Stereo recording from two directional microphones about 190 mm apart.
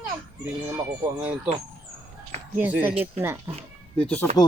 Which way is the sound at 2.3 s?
35° right (ahead or behind).